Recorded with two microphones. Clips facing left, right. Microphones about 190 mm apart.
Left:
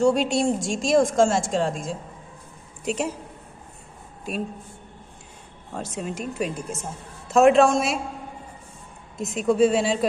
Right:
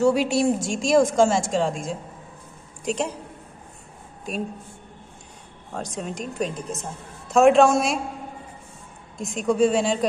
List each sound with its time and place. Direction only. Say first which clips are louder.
0.0 s a woman's voice: right 1 dB; 5° right (ahead or behind)
4.3 s a woman's voice: even; 5° left (ahead or behind)
5.7 s a woman's voice: even; 5° left (ahead or behind)
9.2 s a woman's voice: left 1 dB; centre (ahead or behind)